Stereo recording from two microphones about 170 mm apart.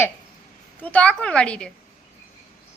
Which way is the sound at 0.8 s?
10° left (ahead or behind).